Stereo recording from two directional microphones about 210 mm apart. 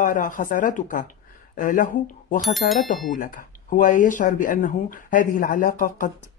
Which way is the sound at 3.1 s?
40° left (ahead or behind).